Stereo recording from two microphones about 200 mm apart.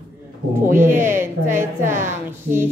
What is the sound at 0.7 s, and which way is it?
A woman's voice, 10° right (ahead or behind).